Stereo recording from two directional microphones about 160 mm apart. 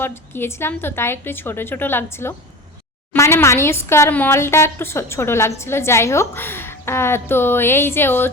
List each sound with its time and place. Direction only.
0.0 s a woman's voice: 15° left (ahead or behind)